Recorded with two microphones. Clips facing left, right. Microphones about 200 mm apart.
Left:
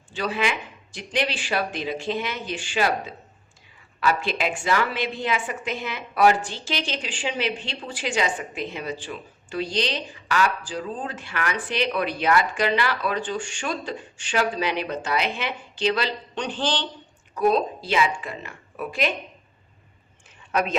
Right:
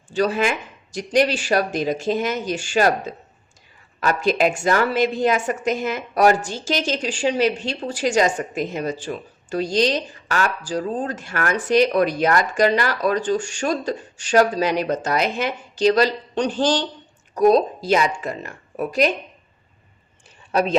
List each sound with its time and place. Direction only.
0.1 s a woman's voice: 45° right (ahead or behind)
20.5 s speech: 35° right (ahead or behind)